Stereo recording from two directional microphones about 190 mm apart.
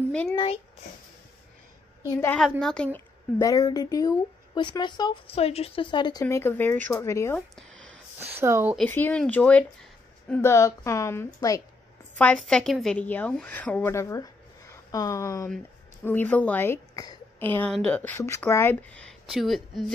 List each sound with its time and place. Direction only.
0.1 s a child's voice: 5° left (ahead or behind)
2.0 s speech: 15° left (ahead or behind)
2.4 s a woman's voice: centre (ahead or behind); by 6.2 s 25° left (ahead or behind)
6.2 s speech: 10° left (ahead or behind)
7.7 s a sound: 90° right
8.2 s speech: 10° right (ahead or behind)
8.7 s speech: 10° left (ahead or behind)